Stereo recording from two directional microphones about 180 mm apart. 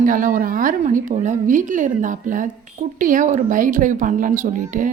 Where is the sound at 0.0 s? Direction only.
50° right (ahead or behind).